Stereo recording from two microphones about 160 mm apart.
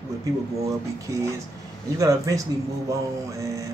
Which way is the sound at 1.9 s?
20° right (ahead or behind).